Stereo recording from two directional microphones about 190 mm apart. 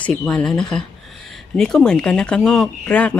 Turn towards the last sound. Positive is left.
turn(degrees=5)  # may be behind; listen again after turning